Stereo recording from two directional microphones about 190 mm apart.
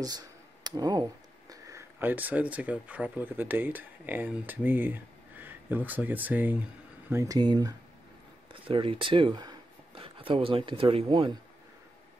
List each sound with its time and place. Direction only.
0.7 s speech: 20° right (ahead or behind)